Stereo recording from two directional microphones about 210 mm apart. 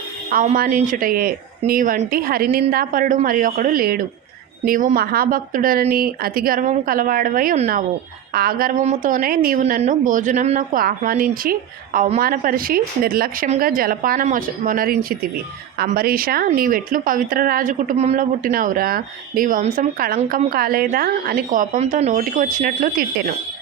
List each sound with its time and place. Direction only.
0.3 s a woman's voice: 40° right (ahead or behind)